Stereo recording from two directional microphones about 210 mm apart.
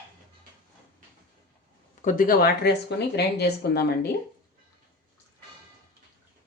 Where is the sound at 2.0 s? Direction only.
40° left (ahead or behind).